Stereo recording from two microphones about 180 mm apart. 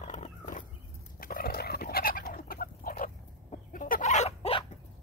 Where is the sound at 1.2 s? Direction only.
55° left (ahead or behind); by 4.6 s 30° left (ahead or behind).